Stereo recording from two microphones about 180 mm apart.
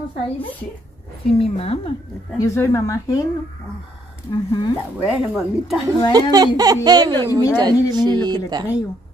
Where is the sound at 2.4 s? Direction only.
15° left (ahead or behind).